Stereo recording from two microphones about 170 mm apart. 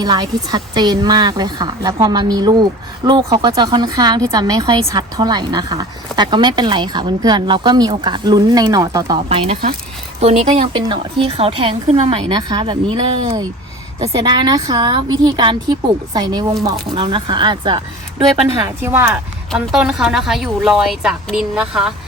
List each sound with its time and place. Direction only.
0.0 s a woman's voice: 20° right (ahead or behind)
19.5 s a woman's voice: 5° right (ahead or behind)